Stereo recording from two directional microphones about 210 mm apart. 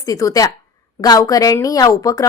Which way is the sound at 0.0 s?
15° left (ahead or behind).